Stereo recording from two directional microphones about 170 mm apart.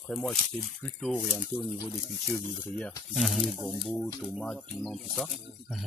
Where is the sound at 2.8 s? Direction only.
Centre (ahead or behind).